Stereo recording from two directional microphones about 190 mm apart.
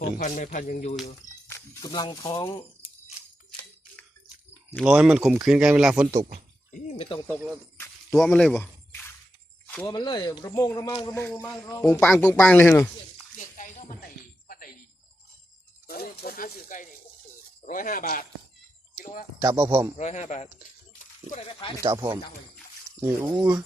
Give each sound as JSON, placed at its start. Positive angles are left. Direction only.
{"t": 0.2, "sound": "speech", "side_deg": 40}
{"t": 1.0, "sound": "a sound", "side_deg": 15}
{"t": 1.9, "sound": "speech", "side_deg": 20}
{"t": 4.8, "sound": "speech", "side_deg": -5}
{"t": 6.7, "sound": "a sound", "side_deg": 45}
{"t": 8.2, "sound": "a sound", "side_deg": 0}
{"t": 9.8, "sound": "speech", "side_deg": 20}
{"t": 13.3, "sound": "music", "side_deg": 40}
{"t": 14.4, "sound": "a sound", "side_deg": 50}
{"t": 15.9, "sound": "speech", "side_deg": 50}
{"t": 19.4, "sound": "speech", "side_deg": -15}
{"t": 20.0, "sound": "speech", "side_deg": 35}
{"t": 21.9, "sound": "speech", "side_deg": -15}